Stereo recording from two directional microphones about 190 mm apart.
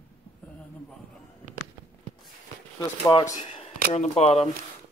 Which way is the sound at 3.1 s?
20° left (ahead or behind).